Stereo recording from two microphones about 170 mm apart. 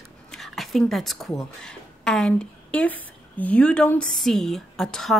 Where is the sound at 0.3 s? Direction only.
Centre (ahead or behind).